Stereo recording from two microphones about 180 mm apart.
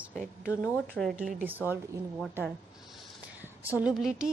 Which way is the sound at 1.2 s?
10° right (ahead or behind).